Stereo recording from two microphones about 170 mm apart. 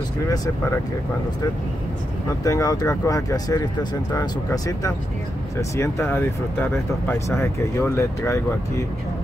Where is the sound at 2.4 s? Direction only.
20° left (ahead or behind).